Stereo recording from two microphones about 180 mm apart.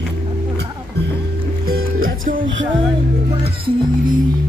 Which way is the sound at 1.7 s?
50° right (ahead or behind).